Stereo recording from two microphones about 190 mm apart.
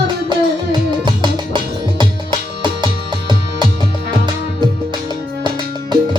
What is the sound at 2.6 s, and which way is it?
Music, 25° right (ahead or behind).